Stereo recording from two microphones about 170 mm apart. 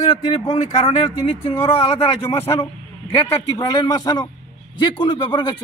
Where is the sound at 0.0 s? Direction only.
40° left (ahead or behind).